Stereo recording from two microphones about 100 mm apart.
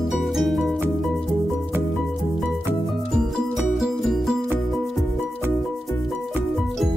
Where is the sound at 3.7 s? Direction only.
Centre (ahead or behind).